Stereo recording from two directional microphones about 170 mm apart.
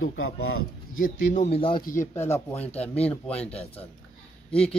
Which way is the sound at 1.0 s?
45° left (ahead or behind).